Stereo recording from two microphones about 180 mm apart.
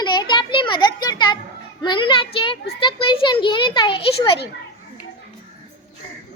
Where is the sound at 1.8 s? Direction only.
25° left (ahead or behind).